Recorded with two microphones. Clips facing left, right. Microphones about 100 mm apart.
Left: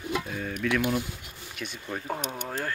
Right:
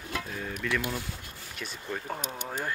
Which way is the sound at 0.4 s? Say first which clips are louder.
Left 3 dB; centre (ahead or behind).